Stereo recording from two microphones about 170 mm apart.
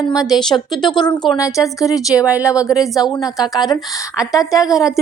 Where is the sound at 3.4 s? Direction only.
20° left (ahead or behind).